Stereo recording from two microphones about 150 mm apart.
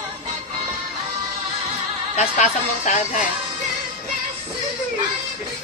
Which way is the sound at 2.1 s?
55° left (ahead or behind).